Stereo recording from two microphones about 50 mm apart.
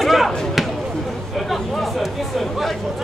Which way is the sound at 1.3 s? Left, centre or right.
Centre.